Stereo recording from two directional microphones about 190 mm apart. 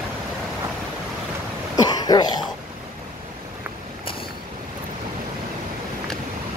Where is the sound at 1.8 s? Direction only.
20° left (ahead or behind).